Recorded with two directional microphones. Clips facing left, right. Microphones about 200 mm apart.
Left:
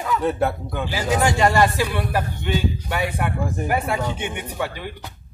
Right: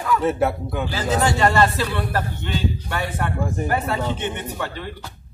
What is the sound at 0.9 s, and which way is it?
Speech, 15° left (ahead or behind).